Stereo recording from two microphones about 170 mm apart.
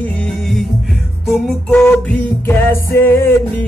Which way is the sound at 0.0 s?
5° left (ahead or behind).